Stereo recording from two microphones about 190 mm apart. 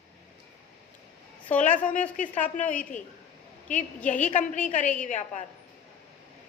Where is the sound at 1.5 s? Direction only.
40° left (ahead or behind).